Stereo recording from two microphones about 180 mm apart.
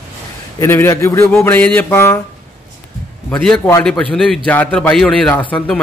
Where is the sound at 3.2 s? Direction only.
10° left (ahead or behind).